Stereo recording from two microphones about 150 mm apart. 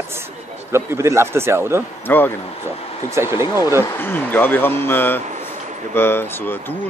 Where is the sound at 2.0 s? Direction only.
15° left (ahead or behind).